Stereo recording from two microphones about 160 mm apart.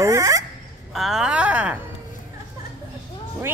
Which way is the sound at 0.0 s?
20° right (ahead or behind).